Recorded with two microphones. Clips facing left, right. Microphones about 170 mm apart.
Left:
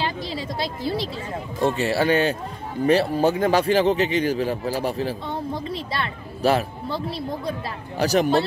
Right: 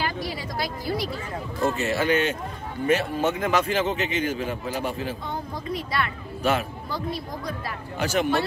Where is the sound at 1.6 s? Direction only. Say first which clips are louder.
Left 3 dB; 30° left (ahead or behind).